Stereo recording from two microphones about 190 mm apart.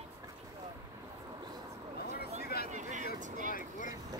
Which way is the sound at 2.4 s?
55° left (ahead or behind).